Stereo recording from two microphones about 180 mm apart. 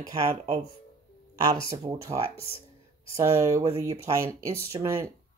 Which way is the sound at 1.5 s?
20° right (ahead or behind).